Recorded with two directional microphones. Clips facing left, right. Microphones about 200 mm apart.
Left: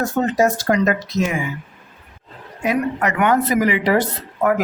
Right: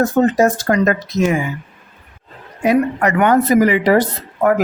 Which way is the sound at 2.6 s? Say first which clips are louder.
Right 5 dB; 40° right (ahead or behind).